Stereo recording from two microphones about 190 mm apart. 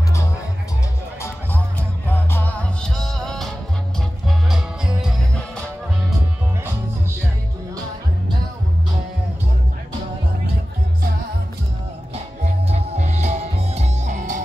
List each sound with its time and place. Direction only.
2.0 s music: 10° left (ahead or behind)
12.6 s music: 35° right (ahead or behind)